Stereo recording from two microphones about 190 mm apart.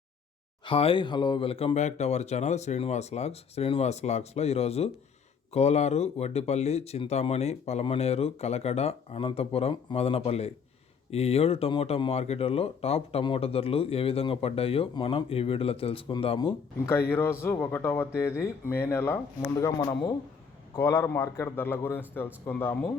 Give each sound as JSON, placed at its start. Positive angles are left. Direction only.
{"t": 0.6, "sound": "speech", "side_deg": 30}
{"t": 17.1, "sound": "speech", "side_deg": 10}